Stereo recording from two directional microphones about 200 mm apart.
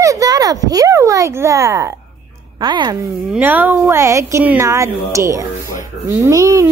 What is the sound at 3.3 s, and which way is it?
A woman's voice, 10° right (ahead or behind).